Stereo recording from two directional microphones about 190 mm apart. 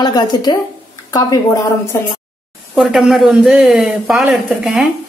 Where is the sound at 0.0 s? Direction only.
20° left (ahead or behind).